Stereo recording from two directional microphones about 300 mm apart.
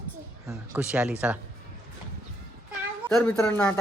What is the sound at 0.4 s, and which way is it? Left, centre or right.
Speech, centre.